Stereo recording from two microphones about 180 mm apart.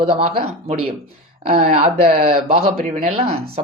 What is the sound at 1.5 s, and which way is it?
Speech, 35° right (ahead or behind).